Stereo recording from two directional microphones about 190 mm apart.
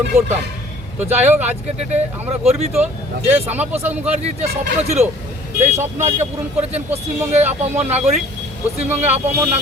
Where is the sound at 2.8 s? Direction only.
10° right (ahead or behind).